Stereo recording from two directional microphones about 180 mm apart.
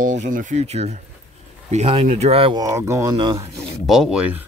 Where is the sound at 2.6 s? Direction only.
15° right (ahead or behind).